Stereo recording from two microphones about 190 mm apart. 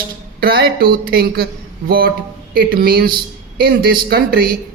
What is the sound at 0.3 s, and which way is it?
A woman's voice, 55° right (ahead or behind).